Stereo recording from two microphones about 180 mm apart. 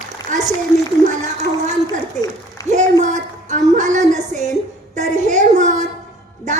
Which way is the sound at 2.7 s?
40° right (ahead or behind).